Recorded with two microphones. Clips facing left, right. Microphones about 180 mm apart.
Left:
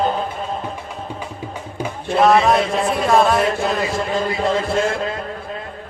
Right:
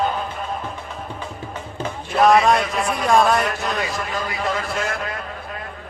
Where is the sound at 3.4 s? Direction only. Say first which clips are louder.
Left 5 dB; 30° left (ahead or behind).